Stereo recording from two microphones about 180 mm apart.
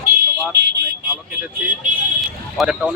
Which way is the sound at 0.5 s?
70° right (ahead or behind).